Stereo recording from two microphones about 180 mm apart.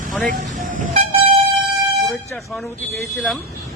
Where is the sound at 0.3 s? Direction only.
50° right (ahead or behind).